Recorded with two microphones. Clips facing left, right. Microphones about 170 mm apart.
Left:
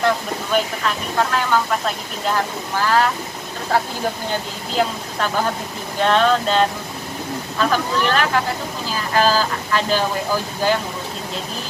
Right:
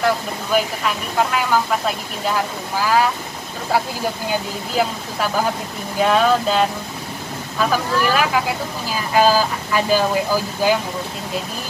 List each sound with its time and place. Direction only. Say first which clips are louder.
0.0 s speech: even; 5° right (ahead or behind)
4.3 s speech: right 2 dB; 10° right (ahead or behind)